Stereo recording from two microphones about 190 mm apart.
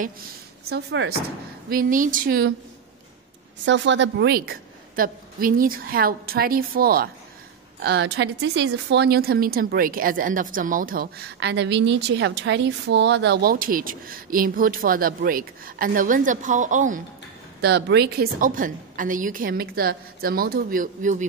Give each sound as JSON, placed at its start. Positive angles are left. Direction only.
{"t": 0.7, "sound": "speech", "side_deg": -60}
{"t": 1.7, "sound": "a woman's voice", "side_deg": -45}
{"t": 3.6, "sound": "a woman's voice", "side_deg": -75}
{"t": 7.8, "sound": "a woman's voice", "side_deg": -60}
{"t": 11.3, "sound": "a woman's voice", "side_deg": -65}
{"t": 17.6, "sound": "a woman's voice", "side_deg": -60}